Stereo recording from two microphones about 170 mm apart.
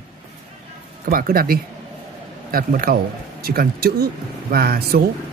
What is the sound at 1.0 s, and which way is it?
Speech, 60° right (ahead or behind).